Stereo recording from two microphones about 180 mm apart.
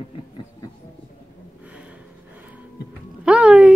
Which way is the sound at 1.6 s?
5° right (ahead or behind).